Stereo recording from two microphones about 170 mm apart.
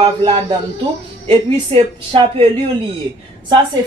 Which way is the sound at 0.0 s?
35° right (ahead or behind).